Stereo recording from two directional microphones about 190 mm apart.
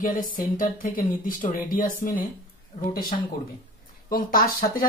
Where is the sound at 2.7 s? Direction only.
25° left (ahead or behind).